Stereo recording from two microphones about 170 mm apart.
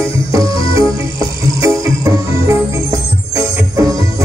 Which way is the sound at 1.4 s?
20° right (ahead or behind).